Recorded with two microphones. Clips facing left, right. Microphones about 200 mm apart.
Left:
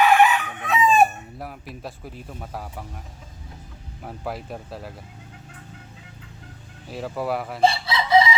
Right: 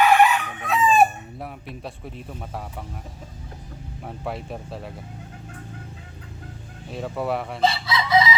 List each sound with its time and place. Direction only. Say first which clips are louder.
0.0 s chicken: even; centre (ahead or behind)
4.0 s speech: even; centre (ahead or behind)
6.9 s speech: even; centre (ahead or behind)
7.6 s chicken: left 3 dB; 30° left (ahead or behind)